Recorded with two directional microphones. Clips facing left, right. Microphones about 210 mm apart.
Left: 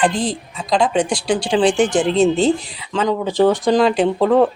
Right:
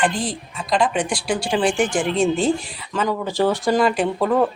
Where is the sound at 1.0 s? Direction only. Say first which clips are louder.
Left 4 dB; 20° left (ahead or behind).